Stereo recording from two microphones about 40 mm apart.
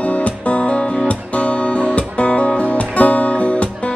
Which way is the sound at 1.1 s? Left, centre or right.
Left.